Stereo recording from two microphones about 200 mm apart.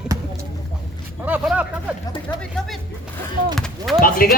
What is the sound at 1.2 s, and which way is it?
Speech, 5° right (ahead or behind).